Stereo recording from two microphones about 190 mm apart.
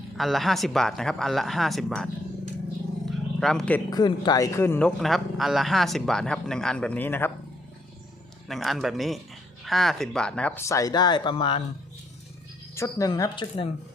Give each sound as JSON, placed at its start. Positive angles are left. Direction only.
{"t": 0.2, "sound": "a man's voice", "side_deg": 0}
{"t": 3.1, "sound": "wild animals", "side_deg": 0}
{"t": 3.8, "sound": "speech", "side_deg": 20}
{"t": 4.9, "sound": "a man's voice", "side_deg": 0}
{"t": 8.4, "sound": "a man's voice", "side_deg": 0}
{"t": 12.7, "sound": "speech", "side_deg": 15}